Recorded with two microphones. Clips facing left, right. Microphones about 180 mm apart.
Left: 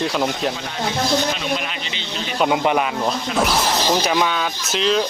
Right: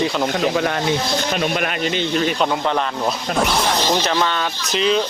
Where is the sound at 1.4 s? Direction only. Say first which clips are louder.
Right 5 dB; 55° right (ahead or behind).